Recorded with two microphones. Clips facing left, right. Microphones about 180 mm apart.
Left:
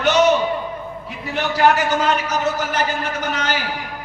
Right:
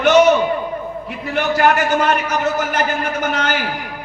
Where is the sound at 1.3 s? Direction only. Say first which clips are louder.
Right 1 dB; 55° right (ahead or behind).